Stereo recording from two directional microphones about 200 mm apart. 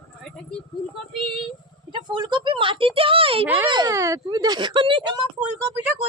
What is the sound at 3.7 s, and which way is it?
A woman's voice, 20° right (ahead or behind).